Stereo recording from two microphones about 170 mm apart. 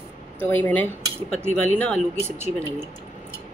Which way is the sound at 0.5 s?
10° left (ahead or behind).